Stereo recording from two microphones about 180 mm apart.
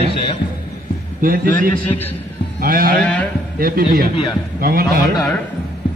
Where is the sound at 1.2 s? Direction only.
50° right (ahead or behind).